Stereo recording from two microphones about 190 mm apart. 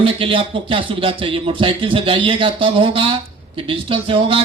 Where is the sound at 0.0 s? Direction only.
30° right (ahead or behind).